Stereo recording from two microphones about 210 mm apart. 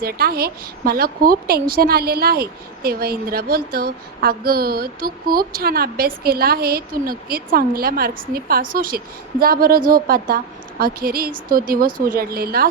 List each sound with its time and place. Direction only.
0.0 s speech: 45° right (ahead or behind)